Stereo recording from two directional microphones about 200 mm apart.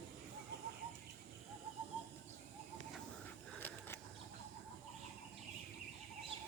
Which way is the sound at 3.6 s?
10° left (ahead or behind).